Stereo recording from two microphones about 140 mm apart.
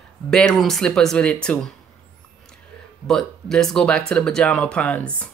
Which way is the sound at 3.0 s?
5° left (ahead or behind).